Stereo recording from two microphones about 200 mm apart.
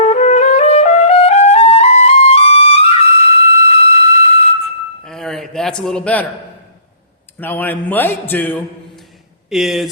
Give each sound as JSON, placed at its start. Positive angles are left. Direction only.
{"t": 0.0, "sound": "music", "side_deg": 35}
{"t": 5.0, "sound": "a sound", "side_deg": 0}
{"t": 7.3, "sound": "a man's voice", "side_deg": 10}